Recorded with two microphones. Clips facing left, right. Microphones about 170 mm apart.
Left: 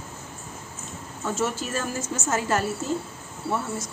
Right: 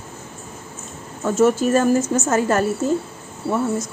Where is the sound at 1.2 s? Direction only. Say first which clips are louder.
Right 11 dB; 50° right (ahead or behind).